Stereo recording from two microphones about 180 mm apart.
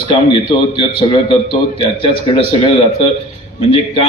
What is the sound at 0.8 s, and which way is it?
A man's voice, 30° left (ahead or behind).